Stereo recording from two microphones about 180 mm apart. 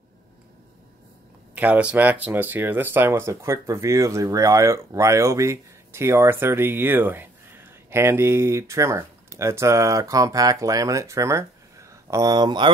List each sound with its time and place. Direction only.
1.5 s speech: 10° right (ahead or behind)